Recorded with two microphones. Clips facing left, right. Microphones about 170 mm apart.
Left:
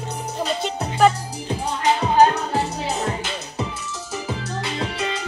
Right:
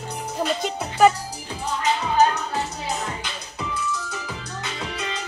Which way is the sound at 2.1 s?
30° left (ahead or behind).